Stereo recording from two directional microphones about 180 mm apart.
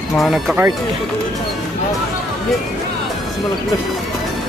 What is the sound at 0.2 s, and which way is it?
Speech, centre (ahead or behind).